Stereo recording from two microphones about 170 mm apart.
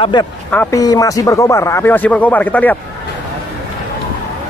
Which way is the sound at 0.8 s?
20° left (ahead or behind).